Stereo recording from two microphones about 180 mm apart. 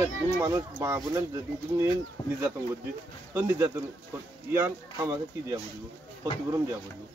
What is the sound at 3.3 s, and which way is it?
Speech, 15° right (ahead or behind).